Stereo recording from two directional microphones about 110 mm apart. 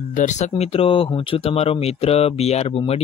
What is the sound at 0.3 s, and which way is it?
Speech, 80° left.